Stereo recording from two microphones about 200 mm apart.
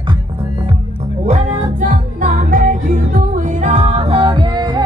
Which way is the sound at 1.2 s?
35° right (ahead or behind).